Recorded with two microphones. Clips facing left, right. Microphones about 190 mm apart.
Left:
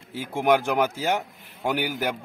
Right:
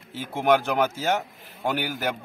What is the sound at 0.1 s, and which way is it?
A man's voice, 15° left (ahead or behind).